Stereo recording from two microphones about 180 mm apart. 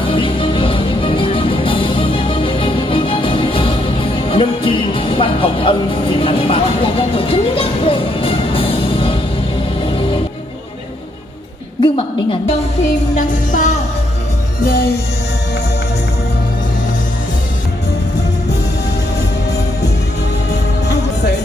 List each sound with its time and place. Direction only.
0.1 s music: 30° left (ahead or behind)
11.8 s a sound: 30° left (ahead or behind)
13.1 s music: 45° left (ahead or behind)